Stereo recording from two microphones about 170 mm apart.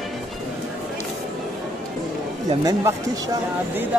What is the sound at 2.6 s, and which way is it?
Speech, 20° right (ahead or behind).